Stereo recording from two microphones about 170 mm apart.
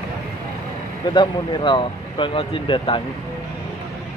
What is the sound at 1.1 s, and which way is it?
Speech, 25° left (ahead or behind).